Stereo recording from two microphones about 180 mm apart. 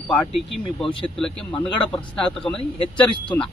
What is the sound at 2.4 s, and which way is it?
Speech, 5° left (ahead or behind).